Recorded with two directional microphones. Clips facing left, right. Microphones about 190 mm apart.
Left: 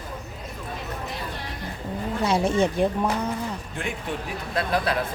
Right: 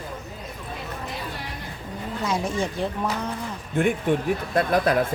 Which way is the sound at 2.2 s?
30° left (ahead or behind).